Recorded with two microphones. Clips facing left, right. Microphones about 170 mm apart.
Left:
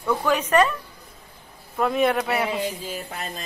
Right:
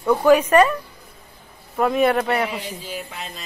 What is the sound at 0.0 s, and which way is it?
Speech, 35° right (ahead or behind).